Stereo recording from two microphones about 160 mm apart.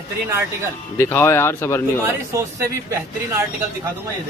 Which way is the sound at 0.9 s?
15° left (ahead or behind).